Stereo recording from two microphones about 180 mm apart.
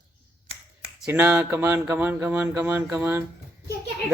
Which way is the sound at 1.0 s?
10° right (ahead or behind).